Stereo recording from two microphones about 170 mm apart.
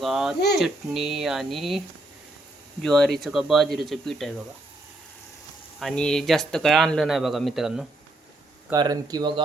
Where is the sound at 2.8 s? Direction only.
Centre (ahead or behind).